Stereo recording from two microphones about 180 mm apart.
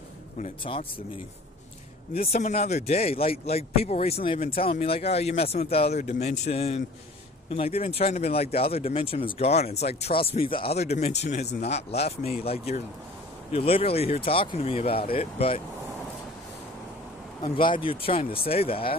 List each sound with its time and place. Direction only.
2.1 s speech: 35° left (ahead or behind)
17.4 s speech: 25° left (ahead or behind)